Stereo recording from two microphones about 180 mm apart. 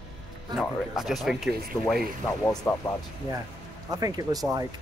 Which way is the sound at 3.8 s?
20° right (ahead or behind).